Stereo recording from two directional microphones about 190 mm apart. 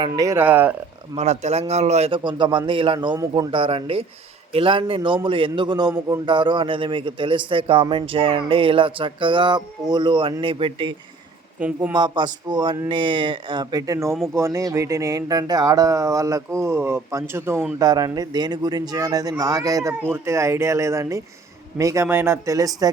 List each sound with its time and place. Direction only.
0.1 s speech: 15° right (ahead or behind)
1.1 s a man's voice: 35° right (ahead or behind)
11.6 s speech: 10° right (ahead or behind)
11.9 s a man's voice: 25° right (ahead or behind)